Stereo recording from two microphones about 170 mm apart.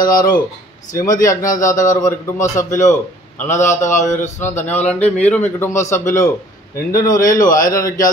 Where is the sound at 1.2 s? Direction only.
20° left (ahead or behind).